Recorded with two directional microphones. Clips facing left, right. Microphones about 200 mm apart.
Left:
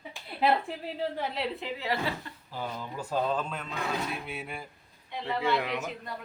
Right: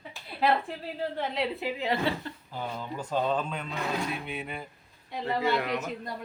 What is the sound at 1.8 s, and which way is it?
Speech, 20° right (ahead or behind).